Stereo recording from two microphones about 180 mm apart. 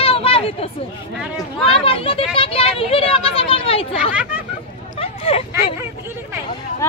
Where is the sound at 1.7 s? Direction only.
30° left (ahead or behind).